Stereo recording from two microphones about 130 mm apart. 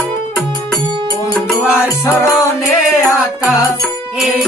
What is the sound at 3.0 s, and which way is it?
Music, centre (ahead or behind).